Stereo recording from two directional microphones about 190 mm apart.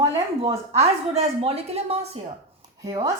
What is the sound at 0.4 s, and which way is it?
Speech, 35° right (ahead or behind).